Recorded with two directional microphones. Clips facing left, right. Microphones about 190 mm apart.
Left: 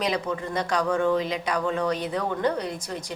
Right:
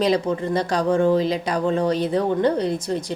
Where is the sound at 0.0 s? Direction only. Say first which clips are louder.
Right 7 dB; 30° right (ahead or behind).